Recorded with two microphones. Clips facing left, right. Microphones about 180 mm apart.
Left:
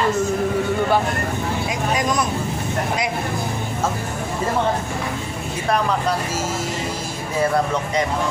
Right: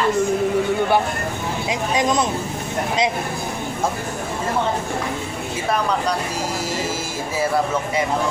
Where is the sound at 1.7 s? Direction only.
25° right (ahead or behind).